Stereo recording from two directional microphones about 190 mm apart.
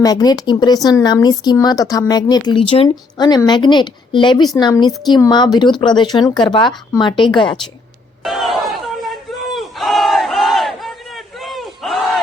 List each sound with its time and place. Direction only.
0.0 s speech: 20° left (ahead or behind)
8.2 s a sound: centre (ahead or behind)
9.6 s battle cry: centre (ahead or behind)